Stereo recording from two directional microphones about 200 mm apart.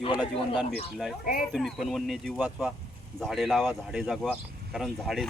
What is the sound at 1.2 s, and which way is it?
Speech, 45° left (ahead or behind).